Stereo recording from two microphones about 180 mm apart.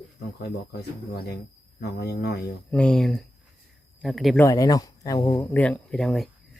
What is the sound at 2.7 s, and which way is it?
Speech, 5° left (ahead or behind).